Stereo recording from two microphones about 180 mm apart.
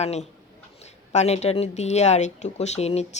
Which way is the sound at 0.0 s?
35° left (ahead or behind).